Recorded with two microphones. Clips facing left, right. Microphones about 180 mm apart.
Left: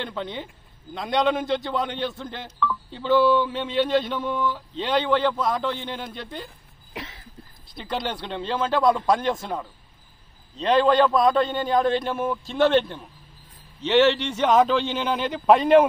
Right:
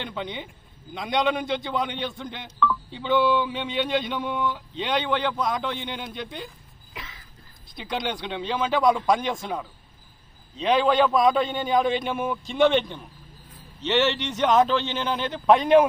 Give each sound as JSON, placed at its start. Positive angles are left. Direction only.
{"t": 0.0, "sound": "speech", "side_deg": 0}
{"t": 6.9, "sound": "a sound", "side_deg": 60}
{"t": 7.7, "sound": "speech", "side_deg": 0}